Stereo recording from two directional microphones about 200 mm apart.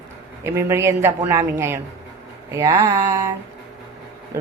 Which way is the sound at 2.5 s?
20° right (ahead or behind).